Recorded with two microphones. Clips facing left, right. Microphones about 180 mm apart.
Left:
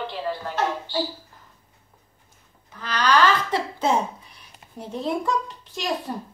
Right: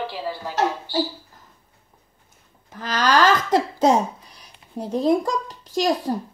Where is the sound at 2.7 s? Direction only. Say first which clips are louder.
Right 1 dB; 45° right (ahead or behind).